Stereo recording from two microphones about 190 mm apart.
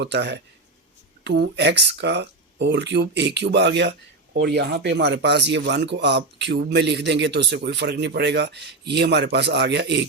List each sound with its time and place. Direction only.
0.0 s speech: 65° right (ahead or behind)